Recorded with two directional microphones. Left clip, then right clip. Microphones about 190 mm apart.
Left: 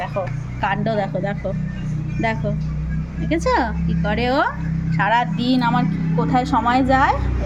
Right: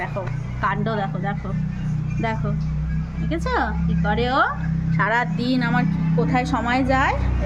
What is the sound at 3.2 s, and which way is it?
A woman's voice, centre (ahead or behind).